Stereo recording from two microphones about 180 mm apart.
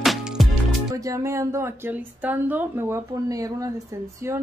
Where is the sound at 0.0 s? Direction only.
Centre (ahead or behind).